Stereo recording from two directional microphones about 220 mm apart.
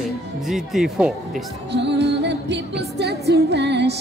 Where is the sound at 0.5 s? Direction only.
Centre (ahead or behind).